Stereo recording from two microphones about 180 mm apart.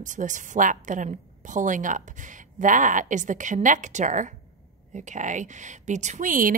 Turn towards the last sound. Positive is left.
turn(degrees=-50)  # may be behind; listen again after turning